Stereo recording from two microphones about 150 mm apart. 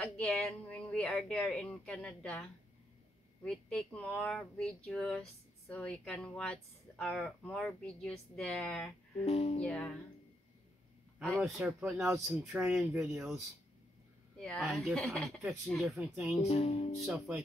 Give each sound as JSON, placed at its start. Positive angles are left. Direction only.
{"t": 0.0, "sound": "speech", "side_deg": 5}
{"t": 3.4, "sound": "speech", "side_deg": 5}
{"t": 9.2, "sound": "speech", "side_deg": 45}
{"t": 9.6, "sound": "speech", "side_deg": 5}
{"t": 11.1, "sound": "speech", "side_deg": 0}
{"t": 11.6, "sound": "speech", "side_deg": -10}
{"t": 14.4, "sound": "speech", "side_deg": 0}
{"t": 16.4, "sound": "speech", "side_deg": 45}